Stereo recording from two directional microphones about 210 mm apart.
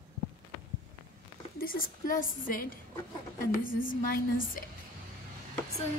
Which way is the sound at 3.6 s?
40° left (ahead or behind).